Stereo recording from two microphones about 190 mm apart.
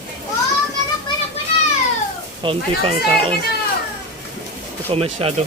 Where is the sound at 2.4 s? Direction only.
30° right (ahead or behind).